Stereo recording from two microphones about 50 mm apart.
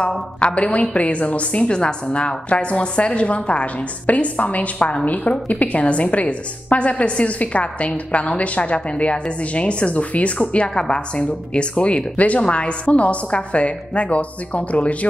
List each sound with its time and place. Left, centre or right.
0.4 s a woman's voice: left